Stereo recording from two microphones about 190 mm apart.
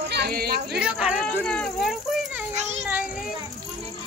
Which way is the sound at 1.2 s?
5° left (ahead or behind).